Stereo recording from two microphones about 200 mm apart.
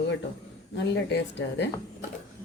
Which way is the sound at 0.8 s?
60° left (ahead or behind).